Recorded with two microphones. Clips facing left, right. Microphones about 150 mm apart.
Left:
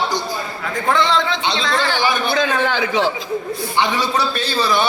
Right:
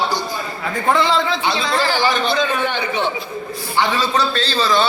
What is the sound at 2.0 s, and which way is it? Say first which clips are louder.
Speech: right 1 dB; 10° left (ahead or behind).